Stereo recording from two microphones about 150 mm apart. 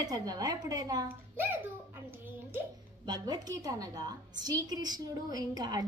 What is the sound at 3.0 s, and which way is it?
A woman's voice, 25° right (ahead or behind).